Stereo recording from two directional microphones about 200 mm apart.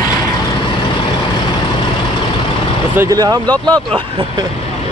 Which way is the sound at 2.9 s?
15° right (ahead or behind).